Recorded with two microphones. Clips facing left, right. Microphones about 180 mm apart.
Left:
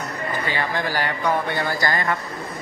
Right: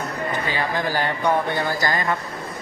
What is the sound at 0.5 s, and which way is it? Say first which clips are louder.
Speech: even; 15° right (ahead or behind).